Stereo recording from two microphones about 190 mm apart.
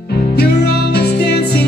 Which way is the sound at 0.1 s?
55° left (ahead or behind).